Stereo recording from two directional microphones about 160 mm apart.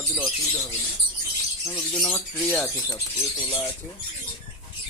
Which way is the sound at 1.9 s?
10° left (ahead or behind).